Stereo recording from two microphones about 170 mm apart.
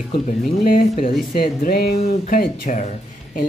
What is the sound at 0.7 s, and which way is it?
Speech, 55° left (ahead or behind).